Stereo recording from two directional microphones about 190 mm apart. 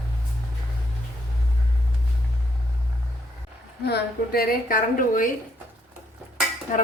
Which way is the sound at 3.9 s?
55° left (ahead or behind).